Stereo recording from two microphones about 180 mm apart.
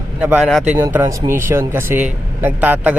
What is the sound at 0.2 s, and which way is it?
Speech, 5° right (ahead or behind).